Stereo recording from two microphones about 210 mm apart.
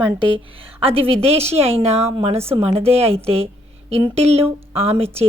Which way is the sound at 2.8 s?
30° right (ahead or behind).